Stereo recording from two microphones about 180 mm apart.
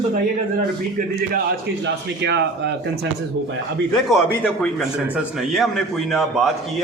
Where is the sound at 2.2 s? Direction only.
70° right (ahead or behind).